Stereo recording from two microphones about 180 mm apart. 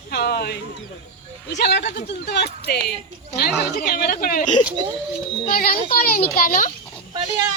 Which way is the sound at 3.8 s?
55° left (ahead or behind).